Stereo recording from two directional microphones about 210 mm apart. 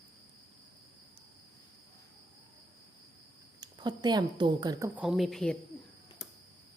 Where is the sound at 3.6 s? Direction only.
20° right (ahead or behind).